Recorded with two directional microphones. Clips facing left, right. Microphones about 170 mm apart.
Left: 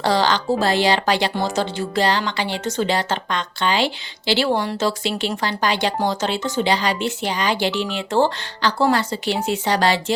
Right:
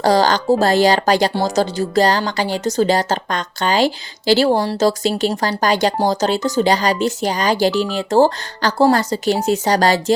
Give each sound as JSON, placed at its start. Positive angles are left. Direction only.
{"t": 0.0, "sound": "a woman's voice", "side_deg": -40}